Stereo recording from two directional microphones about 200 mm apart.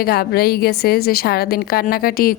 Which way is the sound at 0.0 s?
50° left (ahead or behind).